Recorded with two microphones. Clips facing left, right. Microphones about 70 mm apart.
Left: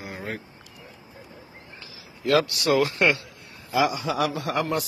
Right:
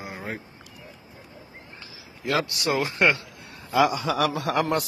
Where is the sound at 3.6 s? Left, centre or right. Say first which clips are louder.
Right 2 dB; right.